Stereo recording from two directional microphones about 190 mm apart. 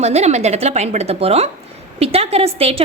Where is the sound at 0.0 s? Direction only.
35° right (ahead or behind).